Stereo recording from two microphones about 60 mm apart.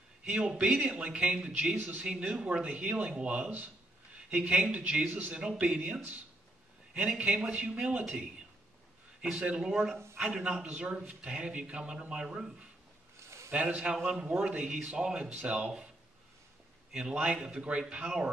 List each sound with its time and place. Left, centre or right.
0.2 s a man's voice: centre
16.9 s a man's voice: centre